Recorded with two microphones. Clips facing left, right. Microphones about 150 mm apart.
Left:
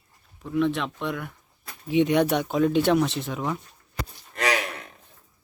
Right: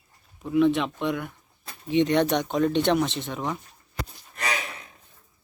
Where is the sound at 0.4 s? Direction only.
5° right (ahead or behind).